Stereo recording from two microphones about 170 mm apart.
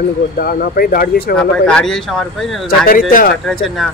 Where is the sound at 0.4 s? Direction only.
60° left (ahead or behind).